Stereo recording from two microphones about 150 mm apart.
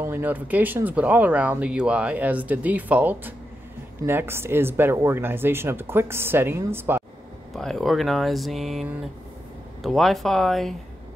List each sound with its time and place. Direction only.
0.0 s speech: 15° right (ahead or behind)
7.5 s speech: centre (ahead or behind)
9.8 s speech: centre (ahead or behind)